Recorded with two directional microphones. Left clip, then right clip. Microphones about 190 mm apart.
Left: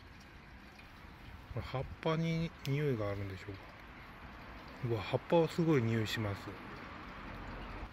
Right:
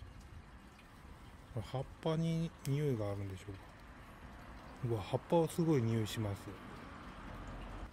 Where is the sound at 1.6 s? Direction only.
15° right (ahead or behind).